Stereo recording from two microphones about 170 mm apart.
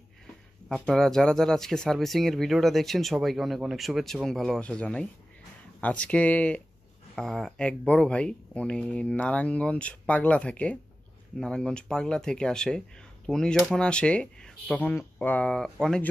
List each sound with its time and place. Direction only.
0.7 s speech: 5° left (ahead or behind)